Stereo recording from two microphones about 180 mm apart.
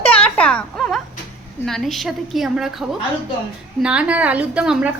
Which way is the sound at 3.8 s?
5° right (ahead or behind).